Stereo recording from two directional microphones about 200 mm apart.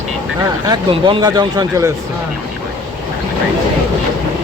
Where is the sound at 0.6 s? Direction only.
25° right (ahead or behind).